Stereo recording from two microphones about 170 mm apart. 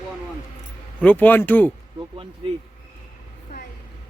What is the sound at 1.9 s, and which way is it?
Speech, 30° right (ahead or behind).